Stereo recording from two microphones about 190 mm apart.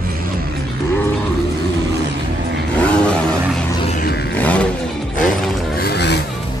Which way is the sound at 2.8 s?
5° left (ahead or behind).